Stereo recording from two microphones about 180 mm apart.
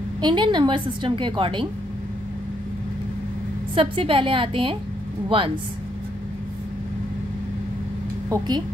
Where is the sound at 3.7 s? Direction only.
30° right (ahead or behind).